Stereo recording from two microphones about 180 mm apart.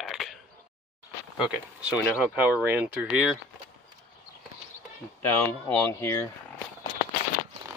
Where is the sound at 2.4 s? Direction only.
10° right (ahead or behind).